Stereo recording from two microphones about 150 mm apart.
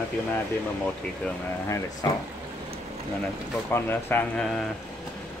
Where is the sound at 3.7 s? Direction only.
15° left (ahead or behind).